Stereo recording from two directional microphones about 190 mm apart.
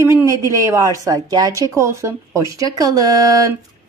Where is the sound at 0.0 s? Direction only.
15° right (ahead or behind).